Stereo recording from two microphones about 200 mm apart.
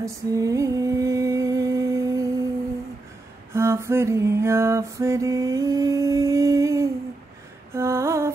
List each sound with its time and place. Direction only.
0.0 s a sound: 15° right (ahead or behind)
3.5 s mantra: 15° right (ahead or behind)
7.7 s music: 15° right (ahead or behind)